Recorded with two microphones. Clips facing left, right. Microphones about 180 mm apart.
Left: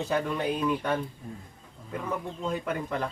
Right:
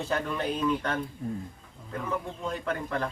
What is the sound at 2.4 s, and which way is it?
Speech, 15° left (ahead or behind).